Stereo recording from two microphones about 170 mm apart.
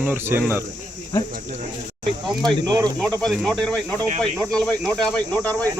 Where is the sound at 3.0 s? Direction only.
5° left (ahead or behind).